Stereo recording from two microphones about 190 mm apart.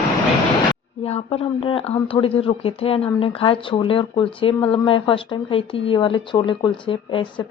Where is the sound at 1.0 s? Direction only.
30° left (ahead or behind).